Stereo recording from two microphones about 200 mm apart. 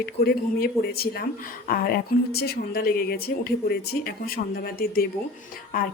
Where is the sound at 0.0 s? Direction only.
50° left (ahead or behind).